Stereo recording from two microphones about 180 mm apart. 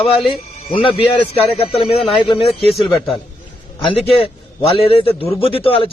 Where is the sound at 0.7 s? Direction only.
30° left (ahead or behind).